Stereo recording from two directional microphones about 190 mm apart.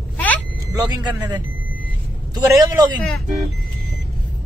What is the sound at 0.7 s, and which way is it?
A man's voice, 20° right (ahead or behind).